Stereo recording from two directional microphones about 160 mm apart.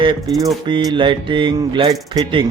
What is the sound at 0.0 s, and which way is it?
A man's voice, 25° right (ahead or behind).